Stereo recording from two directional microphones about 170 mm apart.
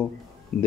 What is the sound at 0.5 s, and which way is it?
Speech, 65° left (ahead or behind).